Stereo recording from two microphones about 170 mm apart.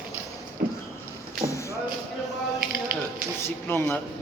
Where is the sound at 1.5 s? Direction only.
15° left (ahead or behind).